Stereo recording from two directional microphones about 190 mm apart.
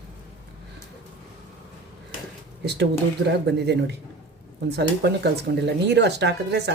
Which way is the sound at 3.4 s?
60° right (ahead or behind).